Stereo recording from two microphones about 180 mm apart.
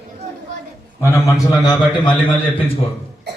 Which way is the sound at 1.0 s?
15° left (ahead or behind).